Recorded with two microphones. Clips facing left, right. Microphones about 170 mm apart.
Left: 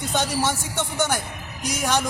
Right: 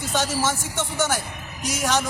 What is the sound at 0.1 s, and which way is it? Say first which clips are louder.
Speech: even; 20° left (ahead or behind).